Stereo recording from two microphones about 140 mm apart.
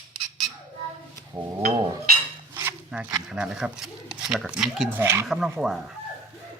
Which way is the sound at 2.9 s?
5° right (ahead or behind).